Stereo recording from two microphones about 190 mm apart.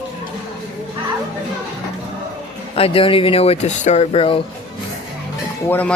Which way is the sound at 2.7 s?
30° left (ahead or behind).